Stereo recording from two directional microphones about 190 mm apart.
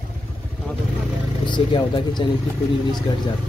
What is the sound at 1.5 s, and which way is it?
Speech, 25° left (ahead or behind).